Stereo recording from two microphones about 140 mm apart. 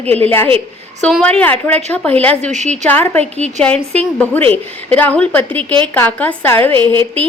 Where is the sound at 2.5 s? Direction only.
55° right (ahead or behind).